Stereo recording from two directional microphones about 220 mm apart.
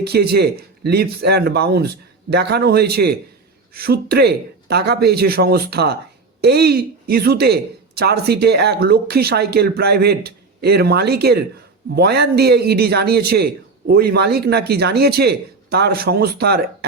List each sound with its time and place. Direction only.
0.0 s speech: 45° right (ahead or behind)